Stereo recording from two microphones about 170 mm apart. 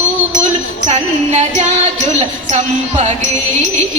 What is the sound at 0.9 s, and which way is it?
A woman's voice, 40° right (ahead or behind).